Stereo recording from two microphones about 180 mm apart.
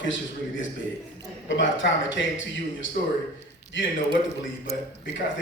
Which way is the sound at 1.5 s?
90° left.